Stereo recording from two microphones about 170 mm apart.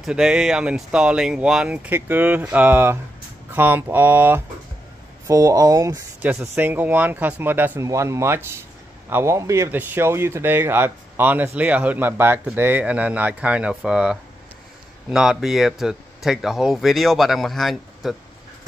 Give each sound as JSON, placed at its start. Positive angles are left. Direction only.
{"t": 0.0, "sound": "speech", "side_deg": -5}